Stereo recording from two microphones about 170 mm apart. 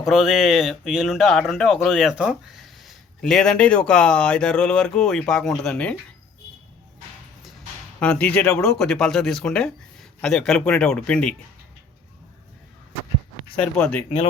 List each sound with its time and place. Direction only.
0.0 s speech: centre (ahead or behind)
7.9 s speech: 5° left (ahead or behind)
13.7 s speech: 5° left (ahead or behind)